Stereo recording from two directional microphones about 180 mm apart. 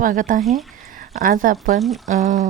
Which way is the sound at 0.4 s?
Centre (ahead or behind).